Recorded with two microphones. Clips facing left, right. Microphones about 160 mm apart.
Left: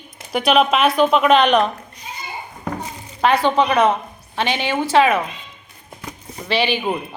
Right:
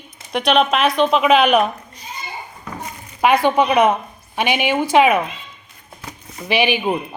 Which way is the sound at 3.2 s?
15° right (ahead or behind).